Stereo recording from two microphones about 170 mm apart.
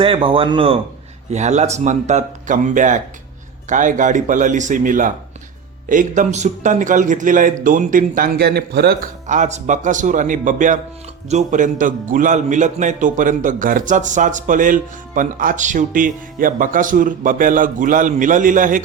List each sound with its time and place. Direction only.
0.0 s speech: 30° right (ahead or behind)
1.3 s a man's voice: 40° right (ahead or behind); by 9.0 s 65° right (ahead or behind)
9.2 s a man's voice: 45° right (ahead or behind)